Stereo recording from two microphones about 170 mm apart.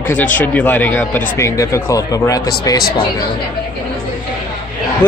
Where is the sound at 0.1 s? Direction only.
10° left (ahead or behind).